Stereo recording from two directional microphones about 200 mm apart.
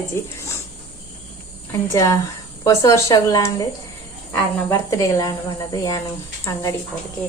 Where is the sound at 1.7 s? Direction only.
15° left (ahead or behind).